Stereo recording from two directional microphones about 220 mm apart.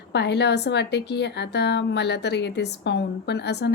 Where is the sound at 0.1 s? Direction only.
50° left (ahead or behind).